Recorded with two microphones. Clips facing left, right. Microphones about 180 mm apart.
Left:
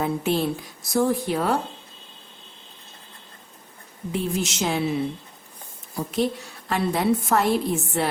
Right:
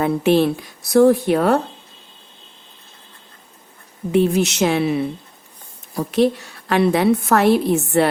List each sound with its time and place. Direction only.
0.0 s a woman's voice: 70° right (ahead or behind)
4.1 s a woman's voice: 70° right (ahead or behind)
6.0 s a woman's voice: 70° right (ahead or behind)